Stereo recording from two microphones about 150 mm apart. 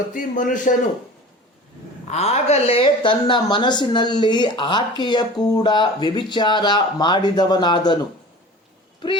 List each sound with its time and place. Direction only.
0.1 s a man's voice: 60° left (ahead or behind)
2.0 s speech: 45° left (ahead or behind); by 7.9 s 30° left (ahead or behind)